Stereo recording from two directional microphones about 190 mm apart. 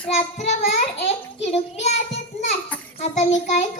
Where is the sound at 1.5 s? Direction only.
35° left (ahead or behind).